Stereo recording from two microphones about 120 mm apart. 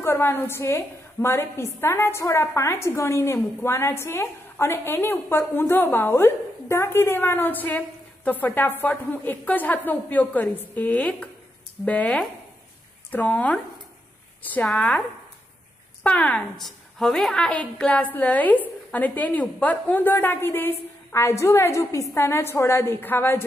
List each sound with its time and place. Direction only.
0.0 s a woman's voice: 20° left (ahead or behind)
16.0 s a woman's voice: 10° left (ahead or behind)